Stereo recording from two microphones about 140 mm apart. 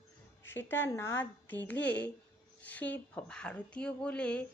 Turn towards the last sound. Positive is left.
turn(degrees=10)  # may be behind; listen again after turning